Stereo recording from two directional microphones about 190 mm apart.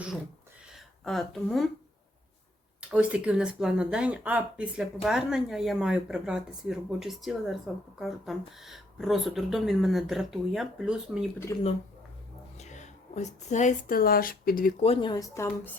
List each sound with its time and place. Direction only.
0.7 s a sound: centre (ahead or behind)
2.9 s speech: 5° right (ahead or behind)
11.5 s speech: 15° left (ahead or behind)
12.5 s speech: 40° left (ahead or behind)
14.8 s speech: 25° left (ahead or behind)